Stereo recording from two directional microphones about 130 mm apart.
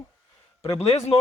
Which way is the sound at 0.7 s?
50° left (ahead or behind).